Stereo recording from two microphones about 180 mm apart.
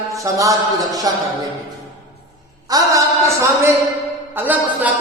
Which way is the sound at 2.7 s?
15° right (ahead or behind).